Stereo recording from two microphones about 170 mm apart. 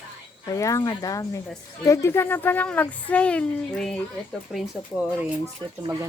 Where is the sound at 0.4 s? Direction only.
20° left (ahead or behind); by 5.0 s centre (ahead or behind).